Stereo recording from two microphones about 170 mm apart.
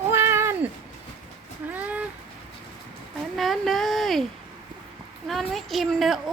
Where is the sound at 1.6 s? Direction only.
10° right (ahead or behind).